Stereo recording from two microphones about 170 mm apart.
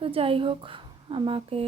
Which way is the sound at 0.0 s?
35° right (ahead or behind).